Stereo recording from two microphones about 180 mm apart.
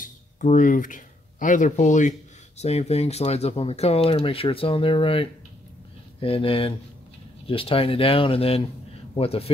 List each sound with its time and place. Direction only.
0.0 s speech: 45° left (ahead or behind)